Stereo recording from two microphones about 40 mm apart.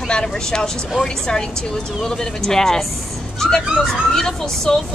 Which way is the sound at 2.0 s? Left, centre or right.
Centre.